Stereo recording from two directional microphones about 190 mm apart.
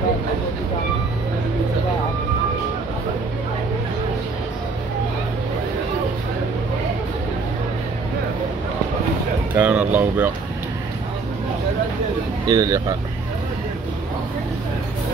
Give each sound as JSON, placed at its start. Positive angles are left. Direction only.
{"t": 9.6, "sound": "a sound", "side_deg": -10}
{"t": 9.9, "sound": "speech", "side_deg": -10}
{"t": 12.4, "sound": "speech", "side_deg": -20}